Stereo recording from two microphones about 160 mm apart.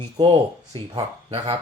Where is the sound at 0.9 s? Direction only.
35° right (ahead or behind).